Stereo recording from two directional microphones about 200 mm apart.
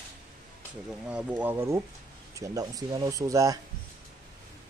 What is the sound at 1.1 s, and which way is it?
Speech, 5° right (ahead or behind).